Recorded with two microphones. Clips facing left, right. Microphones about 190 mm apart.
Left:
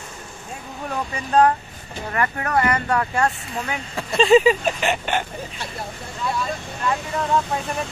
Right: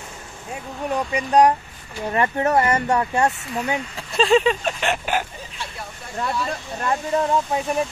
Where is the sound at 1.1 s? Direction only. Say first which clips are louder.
Right 1 dB; 15° right (ahead or behind).